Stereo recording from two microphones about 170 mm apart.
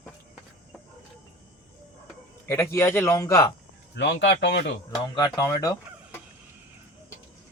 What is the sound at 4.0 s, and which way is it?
Speech, 90° left.